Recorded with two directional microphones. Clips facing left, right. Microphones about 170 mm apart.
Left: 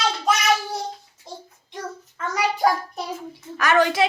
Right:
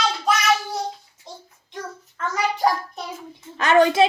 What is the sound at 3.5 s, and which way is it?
Speech, 25° right (ahead or behind).